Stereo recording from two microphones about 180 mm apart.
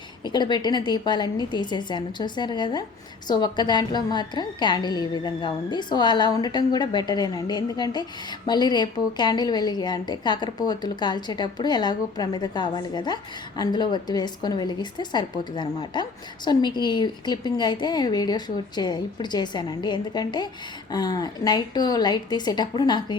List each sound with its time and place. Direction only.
0.3 s a woman's voice: 25° left (ahead or behind)